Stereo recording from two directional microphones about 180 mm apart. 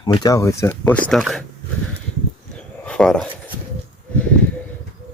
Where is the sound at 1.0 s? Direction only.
Centre (ahead or behind).